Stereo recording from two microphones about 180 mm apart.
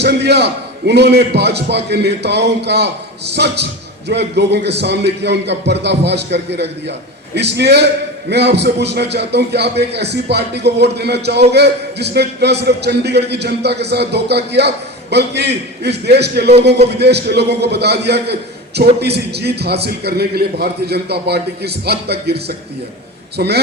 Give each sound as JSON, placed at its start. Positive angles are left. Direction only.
{"t": 0.0, "sound": "a man's voice", "side_deg": -70}